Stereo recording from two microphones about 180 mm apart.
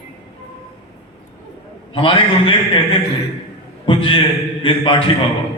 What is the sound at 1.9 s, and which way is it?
Speech, 30° left (ahead or behind).